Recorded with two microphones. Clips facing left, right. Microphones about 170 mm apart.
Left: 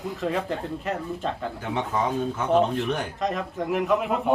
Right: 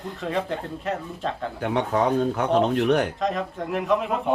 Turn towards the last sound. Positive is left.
turn(degrees=0)  # may be behind; listen again after turning